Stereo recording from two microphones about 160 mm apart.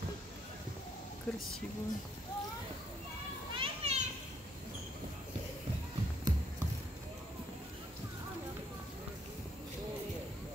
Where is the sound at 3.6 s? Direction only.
40° right (ahead or behind).